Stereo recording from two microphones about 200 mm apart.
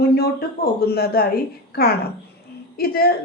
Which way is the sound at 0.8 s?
50° left (ahead or behind).